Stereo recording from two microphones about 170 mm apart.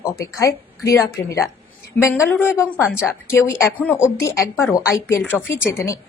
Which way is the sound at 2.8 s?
5° right (ahead or behind).